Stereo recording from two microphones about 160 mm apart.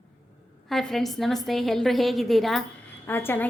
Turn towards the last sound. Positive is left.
turn(degrees=15)  # may be behind; listen again after turning